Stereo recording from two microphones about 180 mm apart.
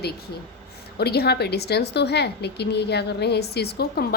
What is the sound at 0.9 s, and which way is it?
A woman's voice, 60° left (ahead or behind).